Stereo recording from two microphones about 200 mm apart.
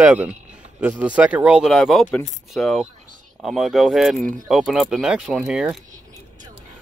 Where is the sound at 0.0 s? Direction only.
5° right (ahead or behind).